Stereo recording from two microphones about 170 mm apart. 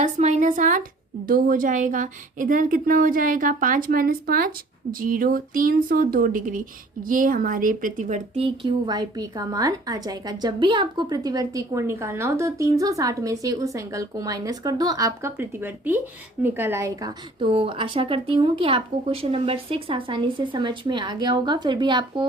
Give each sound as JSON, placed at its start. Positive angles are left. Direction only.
{"t": 0.0, "sound": "a woman's voice", "side_deg": -45}
{"t": 8.4, "sound": "a woman's voice", "side_deg": -25}